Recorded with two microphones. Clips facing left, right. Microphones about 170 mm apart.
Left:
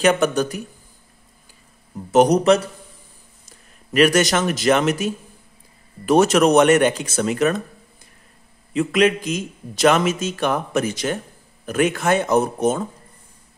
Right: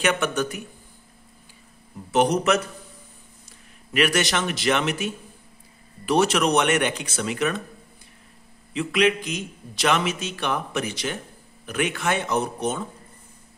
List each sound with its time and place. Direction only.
0.0 s a man's voice: 35° left (ahead or behind)
2.0 s a man's voice: 40° left (ahead or behind)
8.7 s a man's voice: 45° left (ahead or behind)